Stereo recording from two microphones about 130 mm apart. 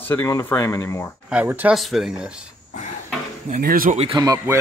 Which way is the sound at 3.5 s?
90° right.